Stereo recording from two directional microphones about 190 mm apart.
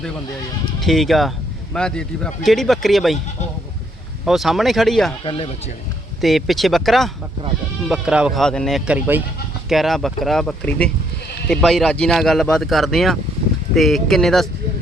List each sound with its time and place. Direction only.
0.8 s speech: centre (ahead or behind)
4.3 s speech: centre (ahead or behind)
5.2 s speech: 30° left (ahead or behind)
6.2 s speech: centre (ahead or behind)